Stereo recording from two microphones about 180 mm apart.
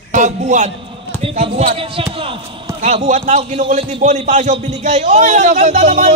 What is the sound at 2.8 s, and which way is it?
A man's voice, 40° right (ahead or behind).